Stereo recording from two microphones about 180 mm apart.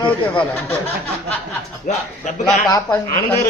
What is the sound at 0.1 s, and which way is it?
Speech, 10° left (ahead or behind).